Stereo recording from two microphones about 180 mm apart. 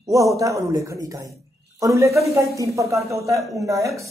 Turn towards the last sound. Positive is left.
turn(degrees=-15)  # may be behind; listen again after turning